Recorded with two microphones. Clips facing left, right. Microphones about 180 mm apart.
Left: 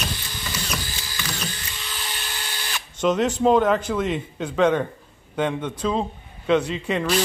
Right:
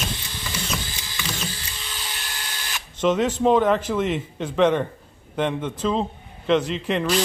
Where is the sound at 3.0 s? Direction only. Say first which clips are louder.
Even; centre (ahead or behind).